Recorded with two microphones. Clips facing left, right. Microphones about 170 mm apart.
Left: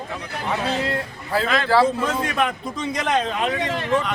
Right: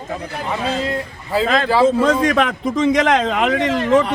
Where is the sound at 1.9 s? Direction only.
85° right.